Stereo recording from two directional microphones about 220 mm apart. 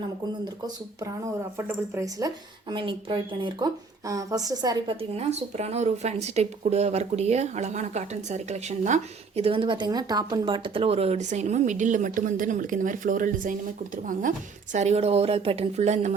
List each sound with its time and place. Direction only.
1.5 s speech: 10° right (ahead or behind); by 16.1 s 30° right (ahead or behind)